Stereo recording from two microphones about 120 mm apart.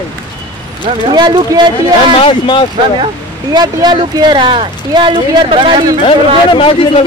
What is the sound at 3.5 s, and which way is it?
Speech, 35° right (ahead or behind).